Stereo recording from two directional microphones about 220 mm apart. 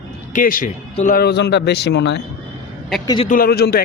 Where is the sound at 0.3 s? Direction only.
35° left (ahead or behind).